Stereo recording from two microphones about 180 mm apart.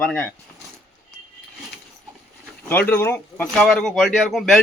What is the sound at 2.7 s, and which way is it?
Speech, 10° left (ahead or behind).